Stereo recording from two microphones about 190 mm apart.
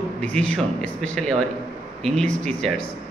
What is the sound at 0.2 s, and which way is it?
A man's voice, 5° left (ahead or behind).